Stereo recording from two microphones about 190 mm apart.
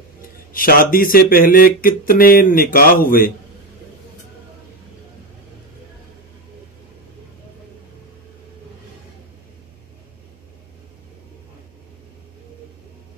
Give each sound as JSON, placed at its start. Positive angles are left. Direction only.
{"t": 0.5, "sound": "speech", "side_deg": 50}